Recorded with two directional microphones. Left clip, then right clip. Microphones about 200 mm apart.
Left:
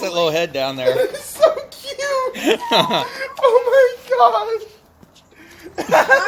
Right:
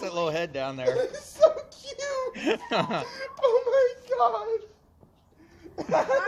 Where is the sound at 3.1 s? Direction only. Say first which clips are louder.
Left 9 dB; 35° right (ahead or behind).